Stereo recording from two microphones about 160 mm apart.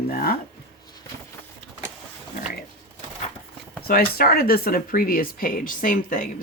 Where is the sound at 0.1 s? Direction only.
70° left (ahead or behind).